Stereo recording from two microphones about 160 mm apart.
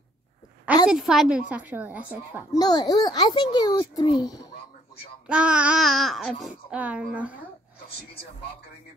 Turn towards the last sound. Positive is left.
turn(degrees=-10)  # may be behind; listen again after turning